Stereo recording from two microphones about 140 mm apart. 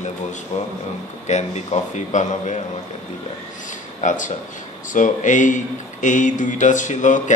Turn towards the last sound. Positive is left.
turn(degrees=60)  # may be behind; listen again after turning